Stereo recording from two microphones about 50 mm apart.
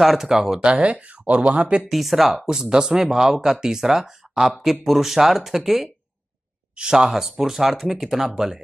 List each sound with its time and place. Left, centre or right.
0.0 s speech: centre
0.7 s speech: right
1.9 s speech: centre